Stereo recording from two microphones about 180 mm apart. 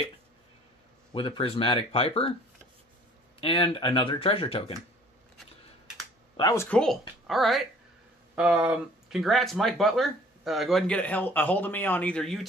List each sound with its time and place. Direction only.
1.1 s speech: 30° left (ahead or behind)
3.3 s speech: 30° left (ahead or behind)
6.3 s speech: 20° left (ahead or behind)
6.8 s speech: centre (ahead or behind)